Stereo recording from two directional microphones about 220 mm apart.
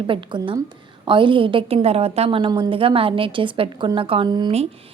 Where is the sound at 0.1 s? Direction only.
20° right (ahead or behind).